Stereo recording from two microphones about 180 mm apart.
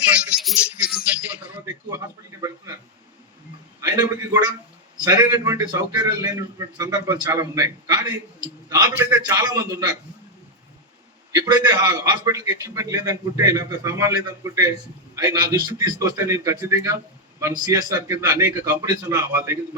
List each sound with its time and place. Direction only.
0.3 s speech: 5° right (ahead or behind)
3.8 s a man's voice: 20° right (ahead or behind)
11.3 s a man's voice: 20° right (ahead or behind)